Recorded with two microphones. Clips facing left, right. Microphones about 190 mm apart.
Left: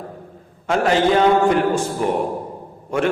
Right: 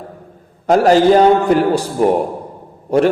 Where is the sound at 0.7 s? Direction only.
40° right (ahead or behind).